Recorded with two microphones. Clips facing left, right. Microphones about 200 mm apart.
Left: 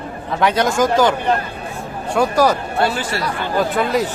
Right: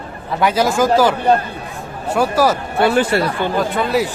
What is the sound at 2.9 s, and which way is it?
Speech, 60° right (ahead or behind).